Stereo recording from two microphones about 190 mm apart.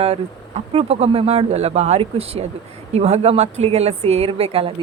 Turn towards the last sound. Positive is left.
turn(degrees=-30)  # may be behind; listen again after turning